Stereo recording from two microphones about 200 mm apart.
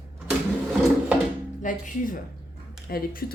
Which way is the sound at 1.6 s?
45° left (ahead or behind).